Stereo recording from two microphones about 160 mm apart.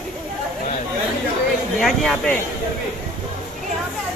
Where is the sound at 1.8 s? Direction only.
Centre (ahead or behind).